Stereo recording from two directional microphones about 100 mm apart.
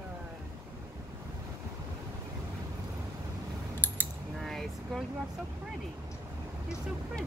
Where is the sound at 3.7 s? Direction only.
20° left (ahead or behind).